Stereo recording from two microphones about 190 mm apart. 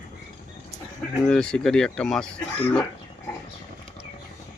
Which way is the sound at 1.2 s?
5° left (ahead or behind).